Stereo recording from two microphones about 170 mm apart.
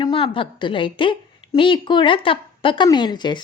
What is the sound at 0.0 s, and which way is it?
A woman's voice, 30° left (ahead or behind).